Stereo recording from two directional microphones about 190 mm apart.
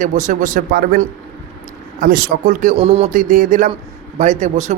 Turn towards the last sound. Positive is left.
turn(degrees=-35)  # may be behind; listen again after turning